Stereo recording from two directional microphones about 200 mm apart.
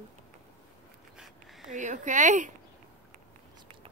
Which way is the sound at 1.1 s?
Centre (ahead or behind).